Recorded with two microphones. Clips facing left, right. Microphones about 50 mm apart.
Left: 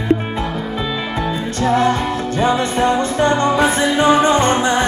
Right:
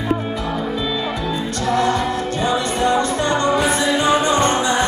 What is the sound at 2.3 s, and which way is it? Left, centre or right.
Music, left.